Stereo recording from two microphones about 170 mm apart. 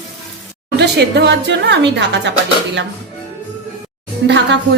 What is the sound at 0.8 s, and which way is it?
A woman's voice, 80° right.